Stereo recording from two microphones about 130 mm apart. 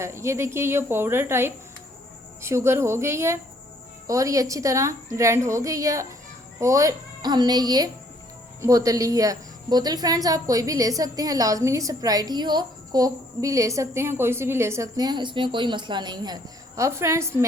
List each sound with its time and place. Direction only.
0.0 s a woman's voice: 20° right (ahead or behind)